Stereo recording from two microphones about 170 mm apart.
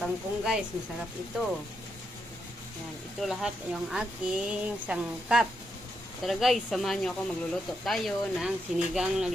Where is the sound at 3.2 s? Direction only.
Centre (ahead or behind).